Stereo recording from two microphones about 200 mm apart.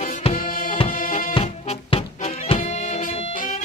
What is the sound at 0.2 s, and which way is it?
Music, 35° left (ahead or behind).